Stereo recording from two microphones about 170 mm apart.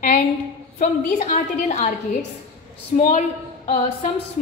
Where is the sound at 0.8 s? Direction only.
50° left (ahead or behind).